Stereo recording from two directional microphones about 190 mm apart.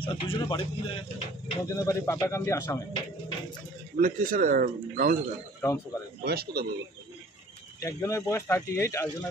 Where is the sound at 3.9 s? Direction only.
45° right (ahead or behind).